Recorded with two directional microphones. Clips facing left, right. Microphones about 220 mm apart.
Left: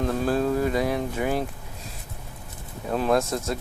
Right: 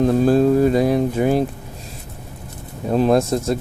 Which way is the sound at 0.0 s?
30° right (ahead or behind).